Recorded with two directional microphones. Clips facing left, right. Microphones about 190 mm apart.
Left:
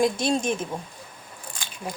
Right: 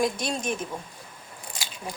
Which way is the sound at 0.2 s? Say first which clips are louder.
Left 6 dB; 30° left (ahead or behind).